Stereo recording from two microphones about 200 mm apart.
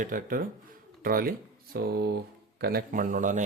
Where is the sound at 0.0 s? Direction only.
45° right (ahead or behind).